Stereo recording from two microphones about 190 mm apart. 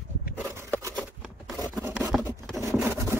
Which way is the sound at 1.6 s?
20° right (ahead or behind).